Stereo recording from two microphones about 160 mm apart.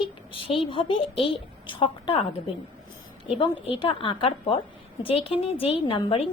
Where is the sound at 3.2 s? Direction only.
35° left (ahead or behind).